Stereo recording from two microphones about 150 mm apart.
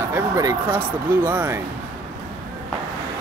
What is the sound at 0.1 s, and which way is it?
Speech, 20° right (ahead or behind).